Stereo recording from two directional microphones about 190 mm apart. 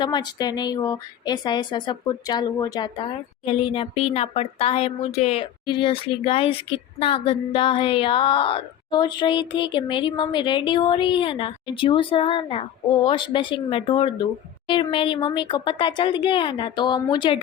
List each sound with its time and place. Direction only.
0.0 s a woman's voice: 20° left (ahead or behind)